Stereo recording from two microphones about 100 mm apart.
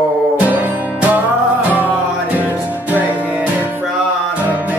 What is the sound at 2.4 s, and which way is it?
Music, 15° right (ahead or behind).